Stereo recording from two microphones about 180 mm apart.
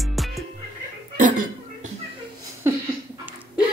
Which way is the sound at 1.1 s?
45° right (ahead or behind).